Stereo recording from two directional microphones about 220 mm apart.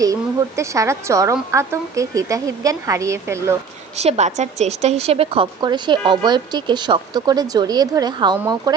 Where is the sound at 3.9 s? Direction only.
30° right (ahead or behind).